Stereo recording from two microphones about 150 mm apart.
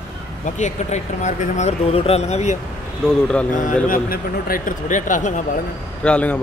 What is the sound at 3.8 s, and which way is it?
A man's voice, 70° left (ahead or behind).